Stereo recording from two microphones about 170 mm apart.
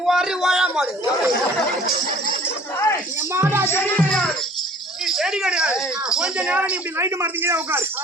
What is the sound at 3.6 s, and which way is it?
A woman's voice, 10° left (ahead or behind).